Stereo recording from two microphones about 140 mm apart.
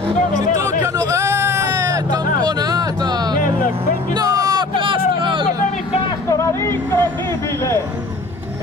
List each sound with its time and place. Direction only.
0.6 s hubbub: 20° right (ahead or behind)
4.1 s vehicle: 25° right (ahead or behind)
4.7 s hubbub: 35° right (ahead or behind)
6.2 s vehicle: 20° left (ahead or behind)